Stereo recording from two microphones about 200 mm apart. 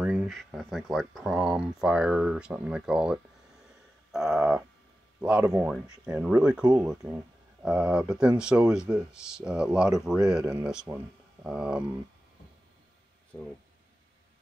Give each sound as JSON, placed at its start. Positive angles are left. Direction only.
{"t": 0.0, "sound": "speech", "side_deg": -5}